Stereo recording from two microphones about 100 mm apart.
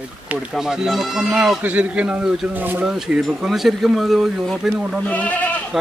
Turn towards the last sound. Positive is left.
turn(degrees=-5)  # may be behind; listen again after turning